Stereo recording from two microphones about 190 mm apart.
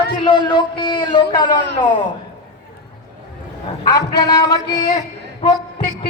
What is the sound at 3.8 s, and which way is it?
A man's voice, 20° left (ahead or behind).